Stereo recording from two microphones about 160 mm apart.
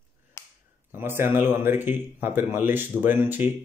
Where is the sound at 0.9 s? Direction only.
15° right (ahead or behind).